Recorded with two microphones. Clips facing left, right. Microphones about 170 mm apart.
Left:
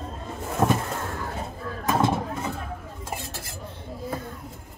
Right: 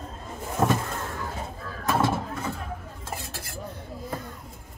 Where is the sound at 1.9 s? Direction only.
20° left (ahead or behind).